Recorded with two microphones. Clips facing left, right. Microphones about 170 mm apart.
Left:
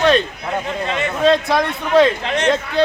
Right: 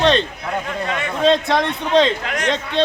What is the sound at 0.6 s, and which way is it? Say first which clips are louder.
Speech: left 2 dB; 25° left (ahead or behind).